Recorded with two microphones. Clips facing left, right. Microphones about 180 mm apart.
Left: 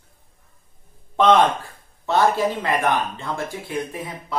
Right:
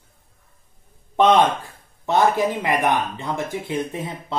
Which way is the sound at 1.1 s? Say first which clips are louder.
Even; 15° right (ahead or behind).